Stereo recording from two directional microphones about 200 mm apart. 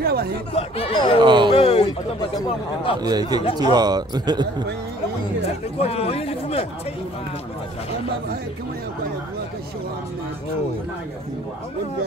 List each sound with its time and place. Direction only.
0.0 s chatter: 50° right (ahead or behind)
0.6 s speech: 30° left (ahead or behind)
1.2 s speech: 25° right (ahead or behind)
1.5 s speech: 30° left (ahead or behind)
3.0 s speech: 20° right (ahead or behind)
5.8 s speech: 30° left (ahead or behind)